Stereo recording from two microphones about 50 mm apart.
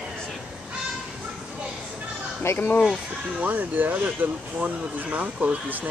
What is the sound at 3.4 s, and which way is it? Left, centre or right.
Speech, right.